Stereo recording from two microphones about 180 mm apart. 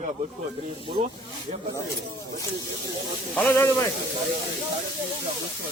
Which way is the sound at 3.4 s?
15° left (ahead or behind).